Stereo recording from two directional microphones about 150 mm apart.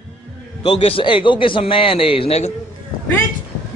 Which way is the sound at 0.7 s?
35° left (ahead or behind).